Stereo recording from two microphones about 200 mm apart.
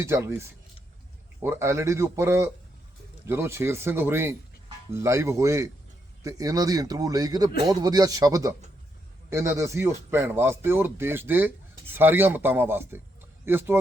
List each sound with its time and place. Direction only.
0.0 s speech: 15° right (ahead or behind)